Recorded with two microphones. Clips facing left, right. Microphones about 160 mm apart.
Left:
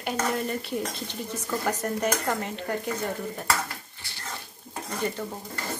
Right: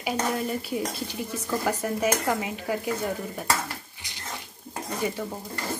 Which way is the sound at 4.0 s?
15° right (ahead or behind).